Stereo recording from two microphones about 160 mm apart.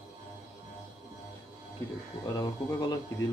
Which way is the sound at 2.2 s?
25° left (ahead or behind).